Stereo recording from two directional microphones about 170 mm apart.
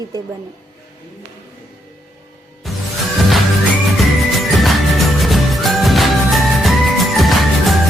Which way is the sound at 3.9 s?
Centre (ahead or behind).